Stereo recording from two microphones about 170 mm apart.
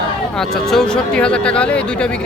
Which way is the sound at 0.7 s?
5° left (ahead or behind).